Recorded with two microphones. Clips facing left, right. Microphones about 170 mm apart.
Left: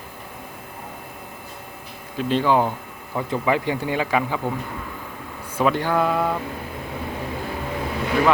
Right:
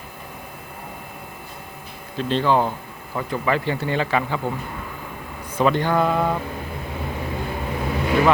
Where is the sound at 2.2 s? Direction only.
10° left (ahead or behind).